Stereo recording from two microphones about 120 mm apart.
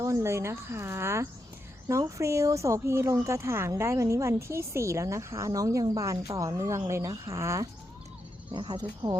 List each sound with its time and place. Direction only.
0.0 s speech: 25° right (ahead or behind)
8.5 s speech: 40° right (ahead or behind)